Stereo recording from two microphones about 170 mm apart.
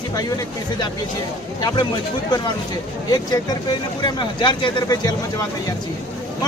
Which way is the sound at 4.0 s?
25° left (ahead or behind).